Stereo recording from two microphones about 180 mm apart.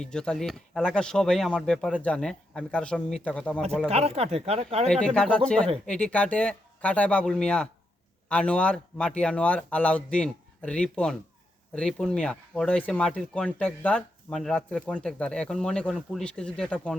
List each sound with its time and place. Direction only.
0.0 s speech: 5° left (ahead or behind)
3.8 s speech: 35° right (ahead or behind)
4.9 s speech: 5° left (ahead or behind)